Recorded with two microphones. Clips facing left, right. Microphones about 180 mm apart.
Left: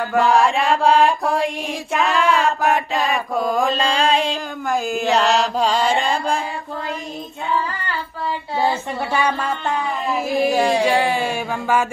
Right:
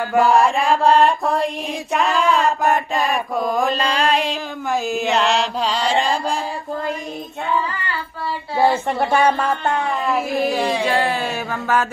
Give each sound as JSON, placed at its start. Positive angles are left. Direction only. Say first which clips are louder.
{"t": 0.2, "sound": "chant", "louder": "right 1 dB", "side_deg": 0}
{"t": 2.0, "sound": "mantra", "louder": "even", "side_deg": 0}
{"t": 4.0, "sound": "speech", "louder": "left 1 dB", "side_deg": 0}
{"t": 5.4, "sound": "mantra", "louder": "left 3 dB", "side_deg": 45}
{"t": 6.0, "sound": "speech", "louder": "even", "side_deg": 0}
{"t": 8.8, "sound": "speech", "louder": "right 4 dB", "side_deg": -45}
{"t": 9.8, "sound": "speech", "louder": "right 1 dB", "side_deg": 0}